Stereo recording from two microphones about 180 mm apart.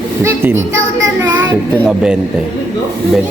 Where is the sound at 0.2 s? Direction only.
15° right (ahead or behind).